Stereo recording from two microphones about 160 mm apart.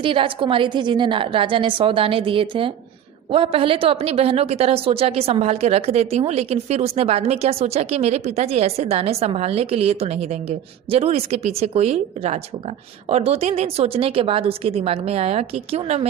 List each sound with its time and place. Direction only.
0.0 s a woman's voice: 35° right (ahead or behind)